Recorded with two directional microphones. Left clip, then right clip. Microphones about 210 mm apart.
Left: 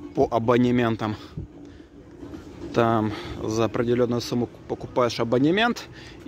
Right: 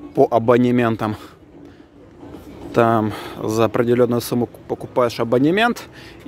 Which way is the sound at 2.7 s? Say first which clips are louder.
Right 6 dB; 10° right (ahead or behind).